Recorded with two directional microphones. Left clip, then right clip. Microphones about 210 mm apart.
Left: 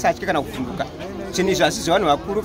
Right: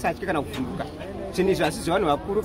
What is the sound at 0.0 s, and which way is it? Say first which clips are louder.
A man's voice: left 6 dB; 10° left (ahead or behind).